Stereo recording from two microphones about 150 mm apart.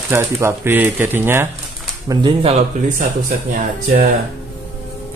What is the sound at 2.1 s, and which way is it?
Speech, 35° right (ahead or behind).